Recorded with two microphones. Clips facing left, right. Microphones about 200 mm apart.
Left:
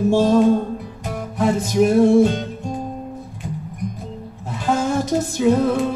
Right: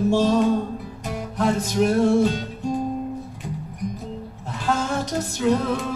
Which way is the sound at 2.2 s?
50° left (ahead or behind).